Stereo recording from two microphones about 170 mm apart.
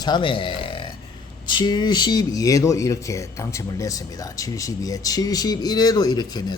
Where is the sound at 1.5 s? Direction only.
25° left (ahead or behind).